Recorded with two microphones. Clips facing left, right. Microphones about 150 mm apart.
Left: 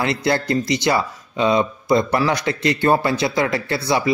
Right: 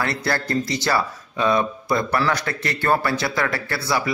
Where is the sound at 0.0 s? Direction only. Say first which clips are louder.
Left 4 dB; 20° left (ahead or behind).